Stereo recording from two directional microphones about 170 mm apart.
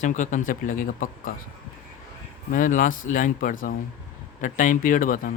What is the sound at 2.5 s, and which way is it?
Speech, 50° left (ahead or behind).